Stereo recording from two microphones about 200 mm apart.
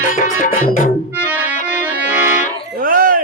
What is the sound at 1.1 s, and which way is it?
Music, 5° right (ahead or behind).